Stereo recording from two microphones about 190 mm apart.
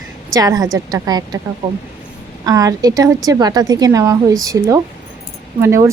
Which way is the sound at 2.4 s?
20° right (ahead or behind).